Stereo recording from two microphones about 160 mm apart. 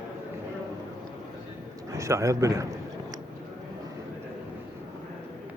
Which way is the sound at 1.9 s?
20° right (ahead or behind).